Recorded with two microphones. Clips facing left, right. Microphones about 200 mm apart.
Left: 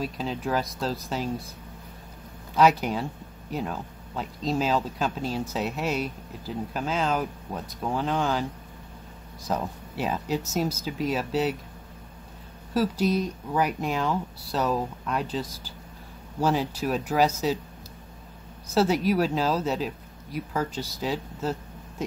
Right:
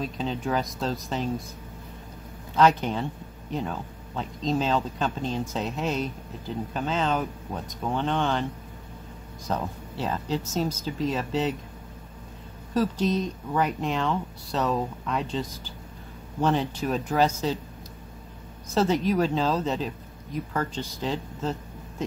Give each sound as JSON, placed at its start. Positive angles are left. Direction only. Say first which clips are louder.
{"t": 0.0, "sound": "speech", "louder": "right 1 dB", "side_deg": 5}
{"t": 2.5, "sound": "speech", "louder": "even", "side_deg": 5}
{"t": 9.5, "sound": "speech", "louder": "left 1 dB", "side_deg": 5}
{"t": 12.7, "sound": "speech", "louder": "even", "side_deg": 10}
{"t": 18.8, "sound": "speech", "louder": "even", "side_deg": 5}